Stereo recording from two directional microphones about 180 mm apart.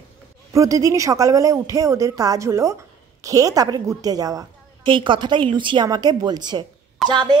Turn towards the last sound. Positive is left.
turn(degrees=0)  # may be behind; listen again after turning